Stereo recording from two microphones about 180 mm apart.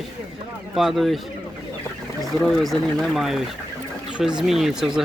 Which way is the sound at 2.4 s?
Centre (ahead or behind).